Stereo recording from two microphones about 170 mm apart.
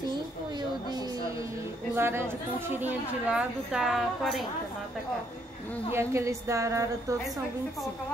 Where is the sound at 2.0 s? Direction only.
15° right (ahead or behind).